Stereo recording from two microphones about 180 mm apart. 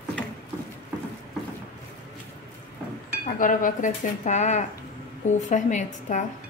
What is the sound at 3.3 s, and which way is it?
Speech, 45° left (ahead or behind).